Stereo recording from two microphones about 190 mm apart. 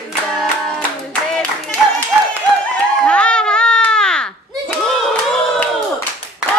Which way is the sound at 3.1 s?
5° left (ahead or behind).